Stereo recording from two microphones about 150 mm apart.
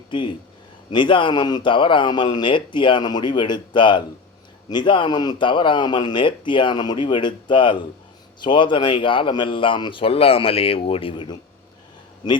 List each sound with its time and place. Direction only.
0.1 s a man's voice: 30° left (ahead or behind)